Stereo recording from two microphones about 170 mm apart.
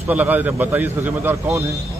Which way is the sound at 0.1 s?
10° right (ahead or behind).